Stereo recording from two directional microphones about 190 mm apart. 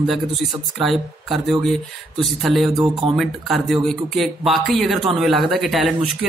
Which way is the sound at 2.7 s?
20° right (ahead or behind).